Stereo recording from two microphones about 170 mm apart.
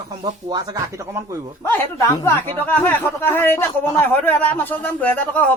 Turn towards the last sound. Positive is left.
turn(degrees=10)  # may be behind; listen again after turning